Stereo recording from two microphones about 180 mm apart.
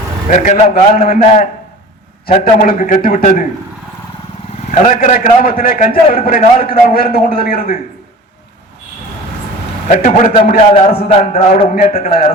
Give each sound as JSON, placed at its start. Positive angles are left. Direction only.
{"t": 0.3, "sound": "a man's voice", "side_deg": 45}
{"t": 4.7, "sound": "a man's voice", "side_deg": 45}
{"t": 9.9, "sound": "a man's voice", "side_deg": 45}
{"t": 10.9, "sound": "a man's voice", "side_deg": 40}